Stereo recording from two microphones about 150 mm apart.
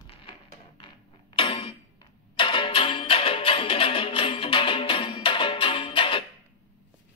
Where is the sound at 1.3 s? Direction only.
35° left (ahead or behind).